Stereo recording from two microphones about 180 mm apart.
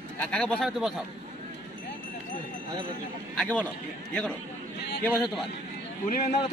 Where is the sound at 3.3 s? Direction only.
5° left (ahead or behind).